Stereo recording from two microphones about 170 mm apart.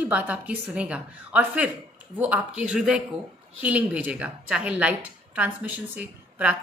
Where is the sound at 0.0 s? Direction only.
10° right (ahead or behind).